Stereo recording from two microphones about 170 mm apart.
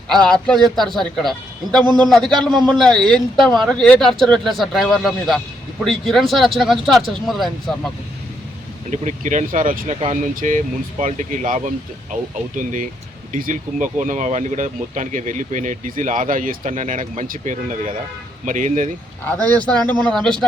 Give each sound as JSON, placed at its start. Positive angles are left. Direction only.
{"t": 0.3, "sound": "speech", "side_deg": 5}
{"t": 8.9, "sound": "speech", "side_deg": -45}
{"t": 19.3, "sound": "speech", "side_deg": 10}